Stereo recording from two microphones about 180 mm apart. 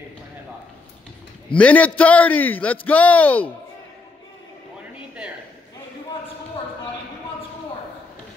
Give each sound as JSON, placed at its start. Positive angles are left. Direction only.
{"t": 1.6, "sound": "a man's voice", "side_deg": 5}